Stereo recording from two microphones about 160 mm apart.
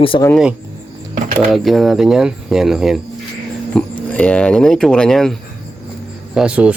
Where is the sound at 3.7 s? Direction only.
10° left (ahead or behind).